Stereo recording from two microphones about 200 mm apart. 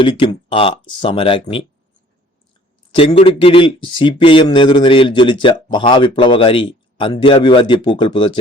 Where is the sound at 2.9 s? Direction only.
25° left (ahead or behind).